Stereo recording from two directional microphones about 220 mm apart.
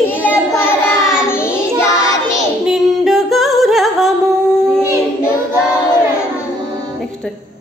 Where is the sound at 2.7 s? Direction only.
Centre (ahead or behind).